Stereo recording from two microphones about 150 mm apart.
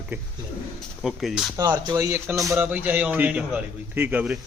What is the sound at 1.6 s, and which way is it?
A man's voice, 30° right (ahead or behind).